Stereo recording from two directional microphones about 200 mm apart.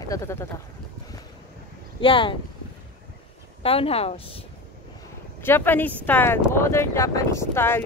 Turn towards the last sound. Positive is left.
turn(degrees=10)  # may be behind; listen again after turning